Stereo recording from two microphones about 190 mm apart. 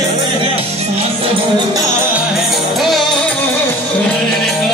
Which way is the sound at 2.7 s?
Centre (ahead or behind).